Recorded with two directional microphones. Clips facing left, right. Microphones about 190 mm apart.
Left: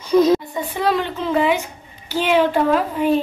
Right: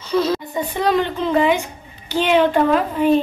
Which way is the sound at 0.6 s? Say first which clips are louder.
Right 2 dB; 5° left (ahead or behind).